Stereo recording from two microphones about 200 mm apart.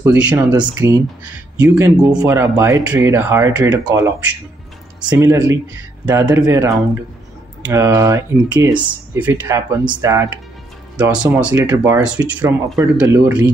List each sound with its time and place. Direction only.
0.0 s speech: 5° right (ahead or behind)
0.5 s speech: 20° right (ahead or behind)
5.2 s speech: 15° right (ahead or behind)